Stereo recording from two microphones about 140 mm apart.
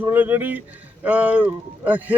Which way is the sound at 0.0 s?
15° right (ahead or behind).